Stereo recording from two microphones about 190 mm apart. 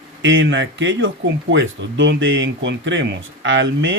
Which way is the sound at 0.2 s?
75° right (ahead or behind).